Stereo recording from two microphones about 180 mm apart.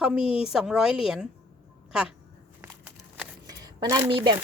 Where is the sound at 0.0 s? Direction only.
5° right (ahead or behind).